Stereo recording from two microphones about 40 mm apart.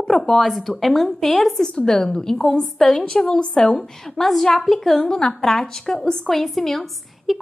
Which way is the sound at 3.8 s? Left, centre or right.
Centre.